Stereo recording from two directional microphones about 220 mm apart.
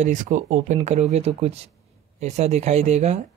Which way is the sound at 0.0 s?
35° right (ahead or behind).